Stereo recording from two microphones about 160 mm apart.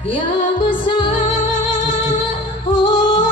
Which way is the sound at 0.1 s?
30° left (ahead or behind).